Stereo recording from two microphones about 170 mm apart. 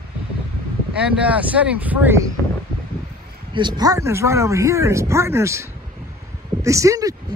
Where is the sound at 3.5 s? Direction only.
25° right (ahead or behind).